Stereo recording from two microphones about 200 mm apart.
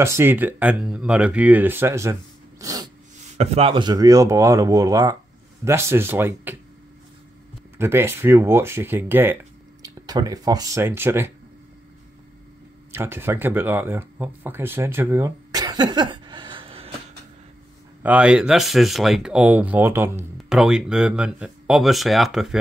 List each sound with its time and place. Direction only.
0.0 s speech: 10° right (ahead or behind)
2.6 s sneeze: 20° right (ahead or behind)
3.3 s speech: 30° right (ahead or behind); by 6.5 s 10° right (ahead or behind)
7.7 s speech: 10° right (ahead or behind)
12.9 s speech: 10° right (ahead or behind); by 16.9 s 25° right (ahead or behind)
18.0 s speech: 5° right (ahead or behind)